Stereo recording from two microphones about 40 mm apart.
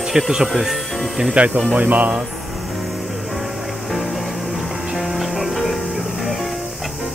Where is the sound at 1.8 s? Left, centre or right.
Right.